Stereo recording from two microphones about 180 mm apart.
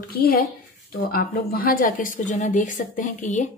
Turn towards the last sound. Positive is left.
turn(degrees=45)  # may be behind; listen again after turning